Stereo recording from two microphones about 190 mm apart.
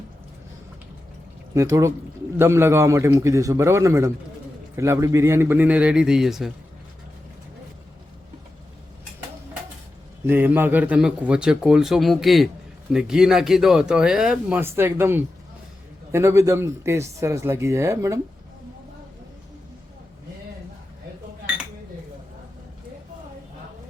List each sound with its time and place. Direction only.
1.5 s speech: 15° right (ahead or behind)
10.2 s speech: 10° right (ahead or behind)